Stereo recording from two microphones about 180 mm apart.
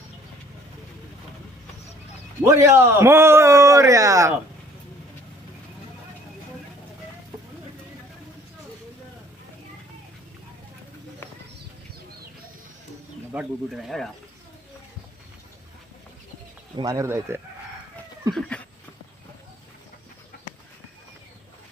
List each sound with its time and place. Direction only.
2.4 s a man's voice: 15° right (ahead or behind)
13.3 s speech: 5° right (ahead or behind)
16.7 s a man's voice: 20° right (ahead or behind)
18.3 s a sound: 5° left (ahead or behind)